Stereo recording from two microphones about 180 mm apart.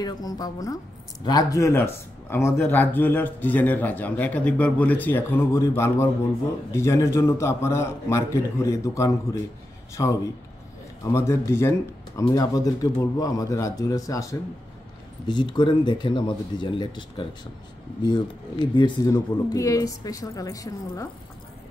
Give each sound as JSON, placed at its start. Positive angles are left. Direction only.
{"t": 0.0, "sound": "a woman's voice", "side_deg": 20}
{"t": 18.8, "sound": "a woman's voice", "side_deg": 20}